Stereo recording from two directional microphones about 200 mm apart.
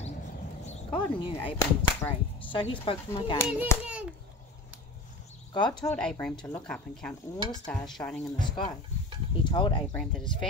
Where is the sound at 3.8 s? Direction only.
5° right (ahead or behind).